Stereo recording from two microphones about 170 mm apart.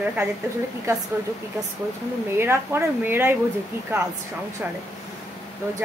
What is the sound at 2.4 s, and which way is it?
Speech, 15° right (ahead or behind).